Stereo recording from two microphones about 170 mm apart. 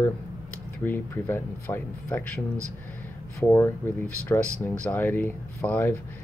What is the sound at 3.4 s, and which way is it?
Speech, 15° left (ahead or behind).